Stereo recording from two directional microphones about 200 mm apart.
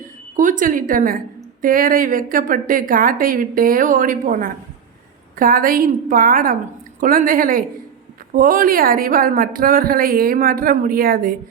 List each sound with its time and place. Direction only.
0.3 s a woman's voice: 40° right (ahead or behind)